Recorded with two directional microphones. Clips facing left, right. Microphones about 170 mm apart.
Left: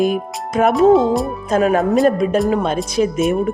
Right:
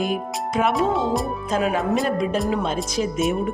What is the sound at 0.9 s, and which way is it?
Speech, centre (ahead or behind).